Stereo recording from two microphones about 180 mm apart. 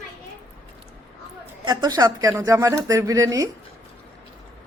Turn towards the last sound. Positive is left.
turn(degrees=-20)  # may be behind; listen again after turning